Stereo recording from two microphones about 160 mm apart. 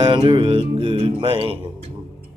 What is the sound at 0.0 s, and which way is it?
Music, 30° right (ahead or behind).